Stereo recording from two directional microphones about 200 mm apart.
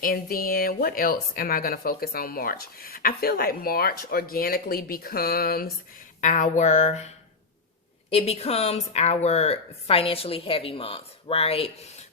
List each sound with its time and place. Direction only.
0.0 s speech: 45° left (ahead or behind)
6.2 s a sound: 40° left (ahead or behind)
8.1 s a woman's voice: 30° left (ahead or behind)